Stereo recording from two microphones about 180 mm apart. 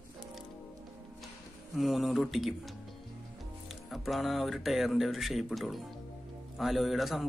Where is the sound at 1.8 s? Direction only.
Centre (ahead or behind).